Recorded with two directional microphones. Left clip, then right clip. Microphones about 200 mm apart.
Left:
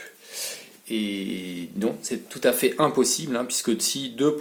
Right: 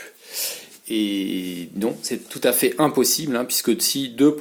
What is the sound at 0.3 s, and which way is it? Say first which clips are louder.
Speech: right 5 dB; 45° right (ahead or behind).